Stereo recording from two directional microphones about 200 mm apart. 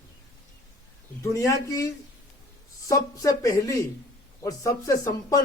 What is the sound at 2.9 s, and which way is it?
Speech, 15° left (ahead or behind).